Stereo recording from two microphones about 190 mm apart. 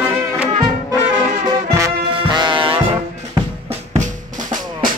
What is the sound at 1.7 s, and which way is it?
Music, 20° right (ahead or behind).